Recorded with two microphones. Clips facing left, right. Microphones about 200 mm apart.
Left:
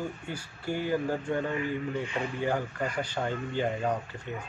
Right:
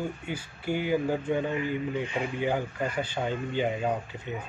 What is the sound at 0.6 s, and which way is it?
Speech, 20° right (ahead or behind).